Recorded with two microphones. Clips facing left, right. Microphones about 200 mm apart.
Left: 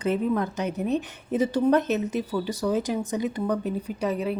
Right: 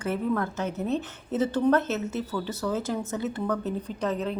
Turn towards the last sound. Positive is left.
turn(degrees=10)  # may be behind; listen again after turning